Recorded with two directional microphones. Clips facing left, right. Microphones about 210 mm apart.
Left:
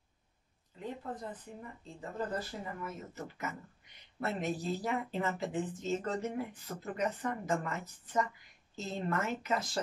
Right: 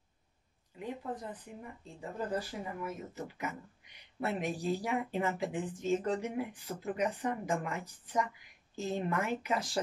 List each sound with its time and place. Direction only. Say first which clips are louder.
0.7 s speech: right 1 dB; 10° right (ahead or behind)